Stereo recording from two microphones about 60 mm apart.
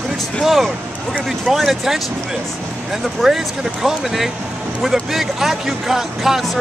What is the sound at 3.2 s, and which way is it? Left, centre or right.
Speech, centre.